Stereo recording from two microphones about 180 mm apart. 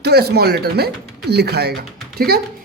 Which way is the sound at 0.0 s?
65° right (ahead or behind).